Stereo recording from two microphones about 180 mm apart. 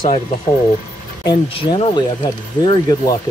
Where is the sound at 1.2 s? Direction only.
30° left (ahead or behind).